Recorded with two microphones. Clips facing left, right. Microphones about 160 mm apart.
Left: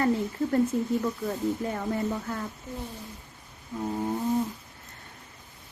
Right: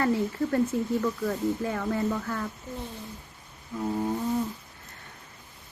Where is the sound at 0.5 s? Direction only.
20° left (ahead or behind).